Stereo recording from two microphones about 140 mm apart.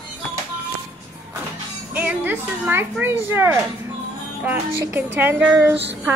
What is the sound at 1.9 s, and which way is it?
Speech, 10° right (ahead or behind).